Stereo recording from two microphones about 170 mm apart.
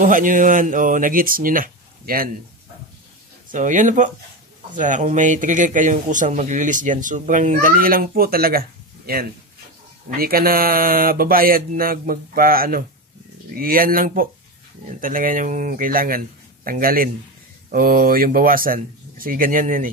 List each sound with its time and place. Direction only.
0.0 s speech: 50° right (ahead or behind)
3.5 s speech: 50° right (ahead or behind)